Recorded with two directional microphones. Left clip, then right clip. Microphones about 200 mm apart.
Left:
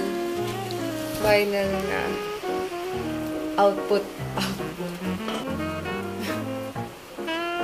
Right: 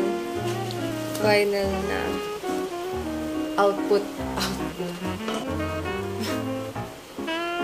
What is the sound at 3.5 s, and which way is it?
Speech, 5° right (ahead or behind).